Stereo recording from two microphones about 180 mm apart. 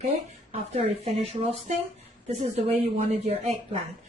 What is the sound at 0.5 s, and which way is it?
A woman's voice, 35° right (ahead or behind).